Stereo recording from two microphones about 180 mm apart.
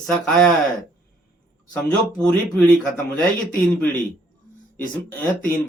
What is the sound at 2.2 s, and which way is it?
A man's voice, 10° left (ahead or behind).